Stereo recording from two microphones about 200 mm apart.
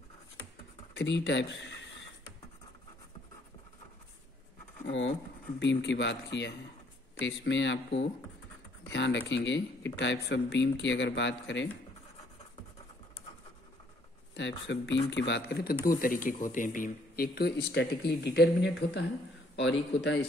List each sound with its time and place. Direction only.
0.9 s speech: 60° left (ahead or behind)
4.8 s scratch: 65° left (ahead or behind)
5.6 s speech: 60° left (ahead or behind)
14.7 s speech: 65° left (ahead or behind)